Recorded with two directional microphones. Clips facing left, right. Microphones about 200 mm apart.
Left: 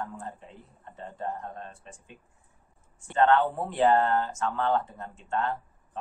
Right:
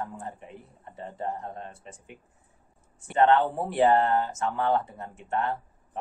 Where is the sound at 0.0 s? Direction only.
20° right (ahead or behind).